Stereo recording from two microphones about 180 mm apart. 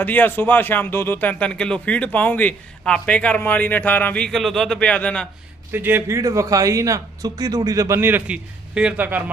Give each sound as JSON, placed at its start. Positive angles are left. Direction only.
{"t": 0.0, "sound": "speech", "side_deg": 10}
{"t": 5.7, "sound": "a man's voice", "side_deg": -10}